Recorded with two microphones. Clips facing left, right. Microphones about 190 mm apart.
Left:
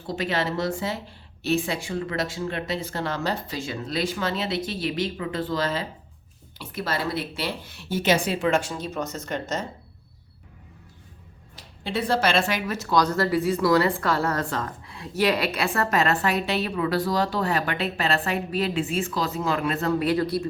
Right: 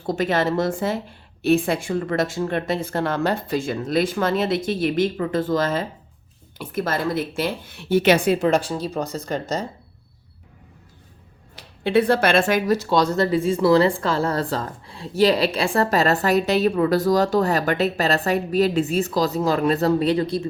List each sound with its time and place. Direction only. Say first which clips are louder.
0.0 s speech: right 5 dB; 50° right (ahead or behind)
8.4 s a woman's voice: right 4 dB; 35° right (ahead or behind)
11.5 s speech: right 10 dB; 60° right (ahead or behind)
12.7 s a woman's voice: right 1 dB; 30° right (ahead or behind)